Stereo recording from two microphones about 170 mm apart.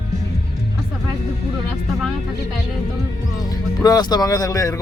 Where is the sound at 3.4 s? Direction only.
20° left (ahead or behind).